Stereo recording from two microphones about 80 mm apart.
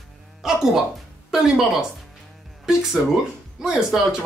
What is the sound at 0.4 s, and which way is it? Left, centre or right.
Speech, centre.